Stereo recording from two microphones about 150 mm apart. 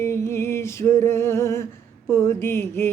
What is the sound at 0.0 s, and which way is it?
Music, 15° left (ahead or behind).